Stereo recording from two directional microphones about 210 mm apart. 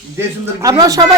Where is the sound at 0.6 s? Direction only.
15° right (ahead or behind).